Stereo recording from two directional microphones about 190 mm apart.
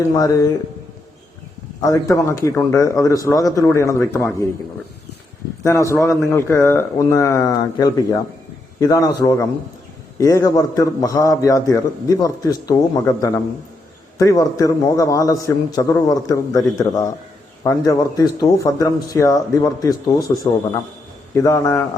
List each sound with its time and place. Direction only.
0.0 s a man's voice: 15° left (ahead or behind)
1.8 s a man's voice: 15° left (ahead or behind)
5.6 s a man's voice: 15° left (ahead or behind)